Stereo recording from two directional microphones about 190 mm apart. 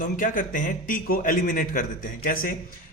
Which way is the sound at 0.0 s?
45° left (ahead or behind).